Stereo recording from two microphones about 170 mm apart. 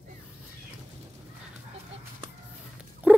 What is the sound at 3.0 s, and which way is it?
Rodents, 10° right (ahead or behind).